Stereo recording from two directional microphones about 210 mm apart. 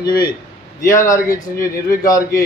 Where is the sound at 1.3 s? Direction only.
15° left (ahead or behind).